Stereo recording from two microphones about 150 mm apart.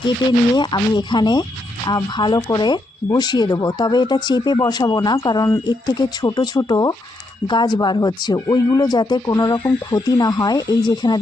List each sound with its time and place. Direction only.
0.5 s speech: 30° left (ahead or behind)